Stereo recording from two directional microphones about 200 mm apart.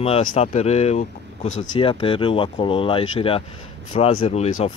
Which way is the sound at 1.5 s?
80° left.